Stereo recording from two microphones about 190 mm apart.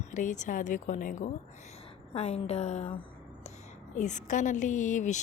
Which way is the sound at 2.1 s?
35° left (ahead or behind).